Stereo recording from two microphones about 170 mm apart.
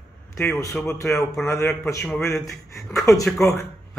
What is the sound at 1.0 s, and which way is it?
Speech, centre (ahead or behind).